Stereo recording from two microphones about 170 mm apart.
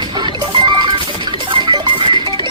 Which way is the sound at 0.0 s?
30° right (ahead or behind).